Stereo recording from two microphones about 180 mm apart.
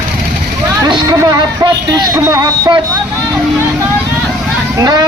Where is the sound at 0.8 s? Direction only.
20° right (ahead or behind).